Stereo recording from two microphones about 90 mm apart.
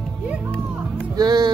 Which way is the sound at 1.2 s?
50° right (ahead or behind).